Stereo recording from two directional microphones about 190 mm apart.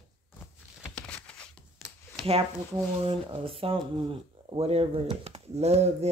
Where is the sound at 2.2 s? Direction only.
30° right (ahead or behind).